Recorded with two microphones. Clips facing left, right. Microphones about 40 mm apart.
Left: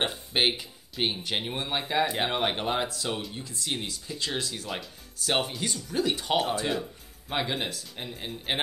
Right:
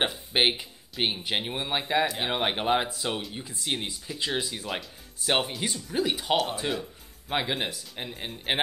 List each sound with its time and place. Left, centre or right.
0.3 s speech: centre